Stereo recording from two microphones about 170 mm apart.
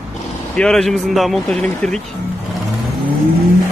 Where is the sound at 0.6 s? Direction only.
5° left (ahead or behind).